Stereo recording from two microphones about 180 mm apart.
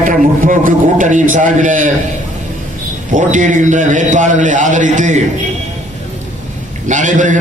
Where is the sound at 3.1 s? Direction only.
45° right (ahead or behind).